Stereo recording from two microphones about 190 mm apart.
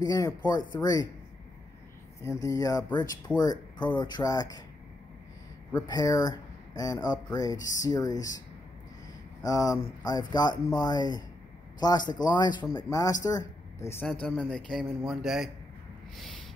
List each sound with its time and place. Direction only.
0.0 s speech: 15° left (ahead or behind)
2.2 s speech: 15° left (ahead or behind)
5.7 s speech: 20° left (ahead or behind)
9.4 s speech: 20° left (ahead or behind)
14.2 s speech: centre (ahead or behind)